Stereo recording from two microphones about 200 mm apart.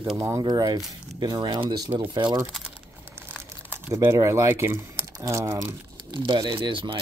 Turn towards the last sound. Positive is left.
turn(degrees=-25)  # may be behind; listen again after turning